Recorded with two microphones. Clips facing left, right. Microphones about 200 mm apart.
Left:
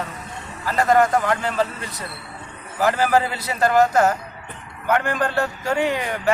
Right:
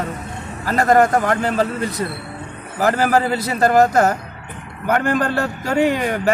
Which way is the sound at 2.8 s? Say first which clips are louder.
Right 2 dB; 45° right (ahead or behind).